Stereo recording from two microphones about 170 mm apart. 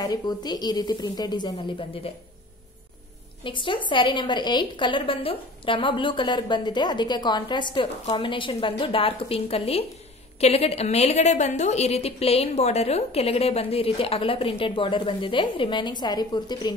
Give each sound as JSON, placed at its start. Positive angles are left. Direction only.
{"t": 0.0, "sound": "a woman's voice", "side_deg": 25}
{"t": 3.4, "sound": "a woman's voice", "side_deg": 30}